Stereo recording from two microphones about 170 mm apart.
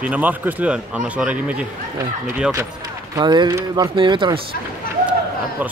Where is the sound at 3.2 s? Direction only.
25° right (ahead or behind).